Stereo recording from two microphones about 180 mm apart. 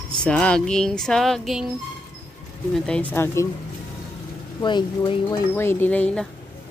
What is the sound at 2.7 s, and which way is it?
Speech, 5° left (ahead or behind).